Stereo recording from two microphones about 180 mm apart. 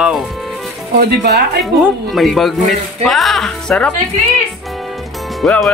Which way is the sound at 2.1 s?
Centre (ahead or behind).